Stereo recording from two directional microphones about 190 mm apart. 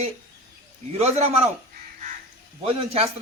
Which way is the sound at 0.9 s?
35° right (ahead or behind).